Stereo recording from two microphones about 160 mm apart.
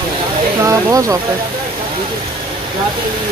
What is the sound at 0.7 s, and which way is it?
Speech, 20° right (ahead or behind).